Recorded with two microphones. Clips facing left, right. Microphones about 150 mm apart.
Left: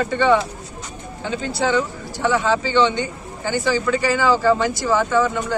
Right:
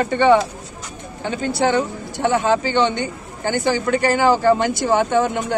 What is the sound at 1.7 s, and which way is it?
A man's voice, 55° right (ahead or behind).